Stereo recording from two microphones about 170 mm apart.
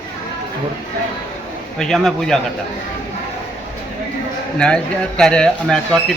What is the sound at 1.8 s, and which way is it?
Speech, 5° left (ahead or behind).